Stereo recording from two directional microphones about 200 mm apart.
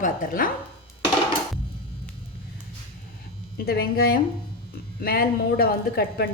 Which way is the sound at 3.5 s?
50° left (ahead or behind).